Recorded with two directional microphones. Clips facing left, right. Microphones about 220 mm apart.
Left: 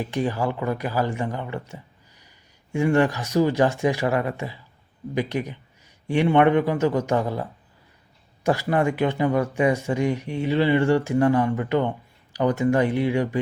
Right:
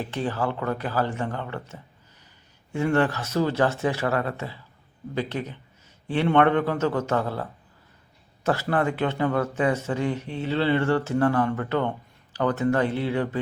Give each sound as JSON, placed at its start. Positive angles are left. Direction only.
{"t": 0.0, "sound": "speech", "side_deg": 15}
{"t": 8.4, "sound": "speech", "side_deg": 15}